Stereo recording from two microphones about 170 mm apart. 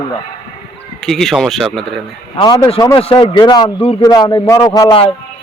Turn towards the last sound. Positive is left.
turn(degrees=25)  # may be behind; listen again after turning